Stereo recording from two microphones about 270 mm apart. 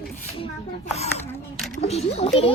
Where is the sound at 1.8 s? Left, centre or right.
Left.